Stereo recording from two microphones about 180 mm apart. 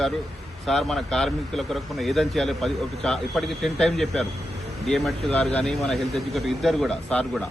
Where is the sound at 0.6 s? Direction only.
Centre (ahead or behind).